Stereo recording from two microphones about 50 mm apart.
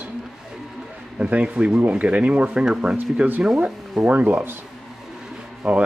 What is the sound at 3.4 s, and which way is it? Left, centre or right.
Speech, centre.